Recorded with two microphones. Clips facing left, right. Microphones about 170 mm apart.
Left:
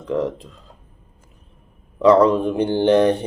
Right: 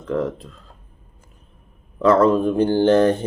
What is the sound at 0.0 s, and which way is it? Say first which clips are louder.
Speech: left 1 dB; 20° left (ahead or behind).